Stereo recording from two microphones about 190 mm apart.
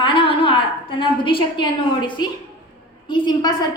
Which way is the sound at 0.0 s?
25° left (ahead or behind).